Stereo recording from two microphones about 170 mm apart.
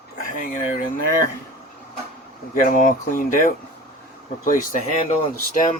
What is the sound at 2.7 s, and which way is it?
Speech, 55° left (ahead or behind).